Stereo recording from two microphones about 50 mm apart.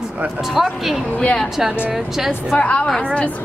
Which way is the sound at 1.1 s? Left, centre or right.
Left.